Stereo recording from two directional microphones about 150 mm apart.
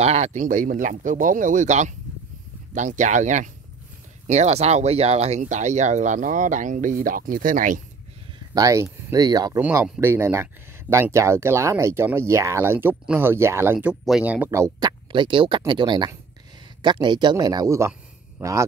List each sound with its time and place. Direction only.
0.0 s speech: 50° right (ahead or behind)
8.5 s speech: 20° right (ahead or behind)
9.6 s speech: 10° right (ahead or behind)